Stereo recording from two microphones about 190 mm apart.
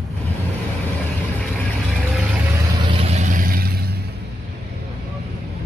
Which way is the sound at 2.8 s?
30° right (ahead or behind).